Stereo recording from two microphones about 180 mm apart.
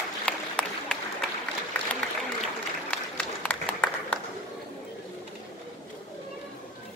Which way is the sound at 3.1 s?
5° left (ahead or behind).